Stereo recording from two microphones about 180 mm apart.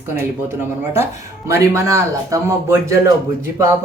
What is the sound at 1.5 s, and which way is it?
Speech, 15° right (ahead or behind).